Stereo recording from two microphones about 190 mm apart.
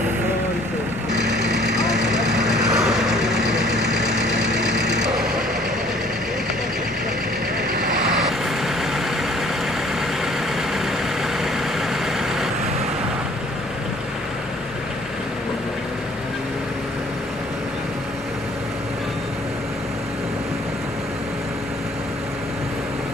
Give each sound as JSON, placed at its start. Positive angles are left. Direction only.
{"t": 1.1, "sound": "vehicle", "side_deg": -65}
{"t": 1.6, "sound": "vehicle", "side_deg": -5}